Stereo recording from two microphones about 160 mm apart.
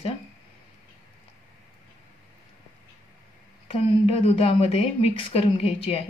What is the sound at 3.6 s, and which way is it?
A woman's voice, 35° left (ahead or behind).